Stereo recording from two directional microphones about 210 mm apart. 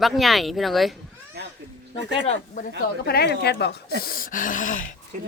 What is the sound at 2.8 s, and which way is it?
A woman's voice, 50° left (ahead or behind).